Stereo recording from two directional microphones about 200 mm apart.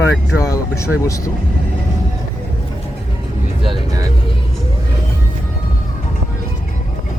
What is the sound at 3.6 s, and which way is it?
Vehicle, 20° right (ahead or behind).